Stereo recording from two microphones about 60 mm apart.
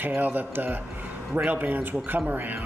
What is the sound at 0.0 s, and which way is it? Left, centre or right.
Speech, right.